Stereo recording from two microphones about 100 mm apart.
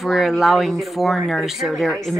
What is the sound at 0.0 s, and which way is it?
Speech, centre (ahead or behind).